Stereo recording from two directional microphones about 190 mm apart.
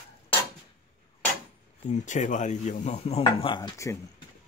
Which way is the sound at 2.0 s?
40° left (ahead or behind).